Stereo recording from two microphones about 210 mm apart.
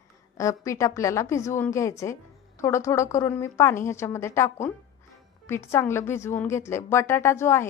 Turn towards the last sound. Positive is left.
turn(degrees=10)  # may be behind; listen again after turning